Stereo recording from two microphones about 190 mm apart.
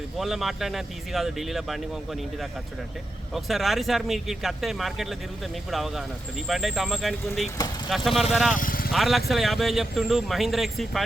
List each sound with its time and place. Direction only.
0.2 s speech: centre (ahead or behind)
8.5 s speech: 50° left (ahead or behind)
8.9 s speech: centre (ahead or behind)